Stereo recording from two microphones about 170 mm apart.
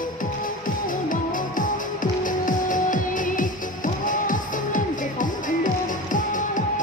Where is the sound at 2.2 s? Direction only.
50° left (ahead or behind).